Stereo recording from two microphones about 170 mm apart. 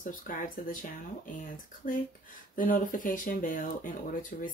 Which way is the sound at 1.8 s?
55° left (ahead or behind).